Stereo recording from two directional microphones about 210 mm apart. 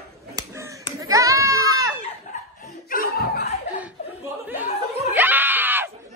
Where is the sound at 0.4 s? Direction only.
15° right (ahead or behind).